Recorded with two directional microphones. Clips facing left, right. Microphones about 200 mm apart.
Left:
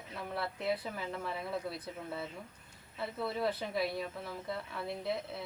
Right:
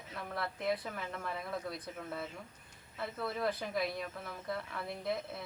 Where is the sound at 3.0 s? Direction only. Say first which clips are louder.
Left 2 dB; centre (ahead or behind).